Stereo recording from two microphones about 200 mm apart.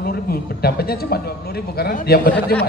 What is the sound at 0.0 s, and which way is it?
Speech, 50° left (ahead or behind).